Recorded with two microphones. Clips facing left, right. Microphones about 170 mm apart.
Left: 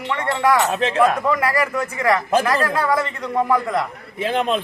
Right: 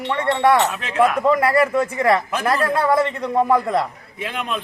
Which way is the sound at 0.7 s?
30° left (ahead or behind).